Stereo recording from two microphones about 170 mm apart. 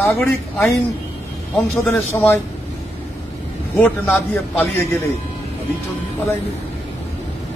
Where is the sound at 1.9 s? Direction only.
15° left (ahead or behind).